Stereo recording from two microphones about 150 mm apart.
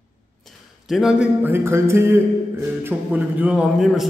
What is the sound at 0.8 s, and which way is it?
A man's voice, 5° right (ahead or behind).